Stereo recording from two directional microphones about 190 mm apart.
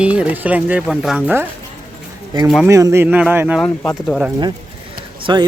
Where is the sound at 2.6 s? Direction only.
15° right (ahead or behind).